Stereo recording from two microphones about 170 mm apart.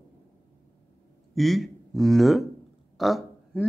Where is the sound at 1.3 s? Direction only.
Centre (ahead or behind).